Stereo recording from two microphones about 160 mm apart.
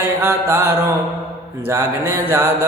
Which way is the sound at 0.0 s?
15° right (ahead or behind).